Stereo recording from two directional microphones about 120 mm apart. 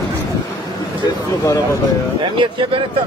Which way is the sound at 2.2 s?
45° right (ahead or behind).